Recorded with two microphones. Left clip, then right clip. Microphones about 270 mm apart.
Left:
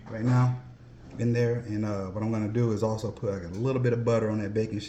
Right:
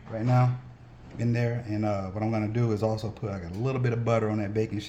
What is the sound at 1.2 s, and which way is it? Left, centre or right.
Speech, right.